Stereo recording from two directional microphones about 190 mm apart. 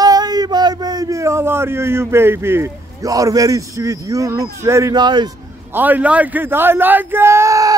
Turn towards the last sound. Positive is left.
turn(degrees=-15)  # may be behind; listen again after turning